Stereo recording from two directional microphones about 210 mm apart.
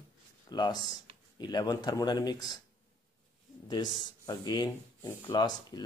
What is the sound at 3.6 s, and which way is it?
Speech, 20° left (ahead or behind).